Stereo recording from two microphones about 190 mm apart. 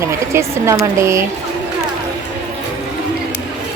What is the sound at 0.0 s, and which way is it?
Speech, 15° right (ahead or behind).